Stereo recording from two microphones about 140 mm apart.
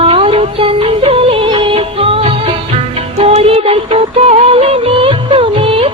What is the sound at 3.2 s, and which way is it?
Music, 45° right (ahead or behind).